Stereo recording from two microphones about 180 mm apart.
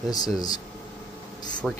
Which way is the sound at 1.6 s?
Centre (ahead or behind).